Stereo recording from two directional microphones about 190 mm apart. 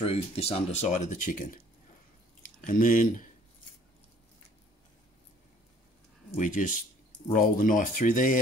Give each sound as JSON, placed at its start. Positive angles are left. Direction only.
{"t": 0.0, "sound": "speech", "side_deg": 30}
{"t": 6.3, "sound": "speech", "side_deg": 45}